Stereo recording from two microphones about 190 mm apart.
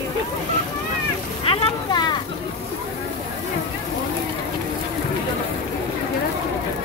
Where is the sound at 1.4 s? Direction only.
25° left (ahead or behind).